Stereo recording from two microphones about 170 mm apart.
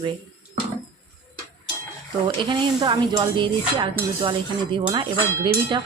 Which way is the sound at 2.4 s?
25° right (ahead or behind).